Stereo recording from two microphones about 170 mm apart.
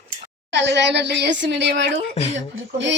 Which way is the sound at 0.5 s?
90° right.